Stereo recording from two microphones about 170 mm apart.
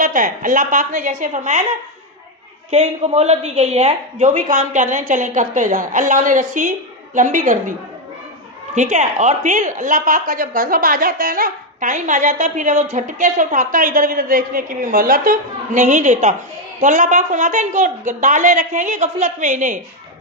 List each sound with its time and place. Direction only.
0.0 s speech: 50° right (ahead or behind)
2.6 s speech: 40° right (ahead or behind)
8.7 s speech: 45° right (ahead or behind)